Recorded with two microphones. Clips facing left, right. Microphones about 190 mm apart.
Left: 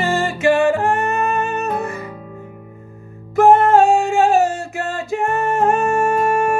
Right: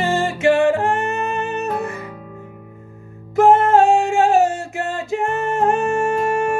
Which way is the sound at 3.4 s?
20° right (ahead or behind).